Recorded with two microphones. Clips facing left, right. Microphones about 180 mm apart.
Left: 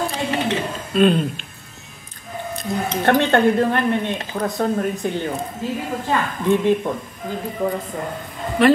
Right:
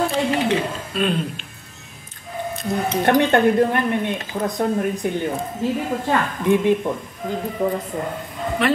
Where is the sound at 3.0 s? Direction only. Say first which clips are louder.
Even; 15° right (ahead or behind).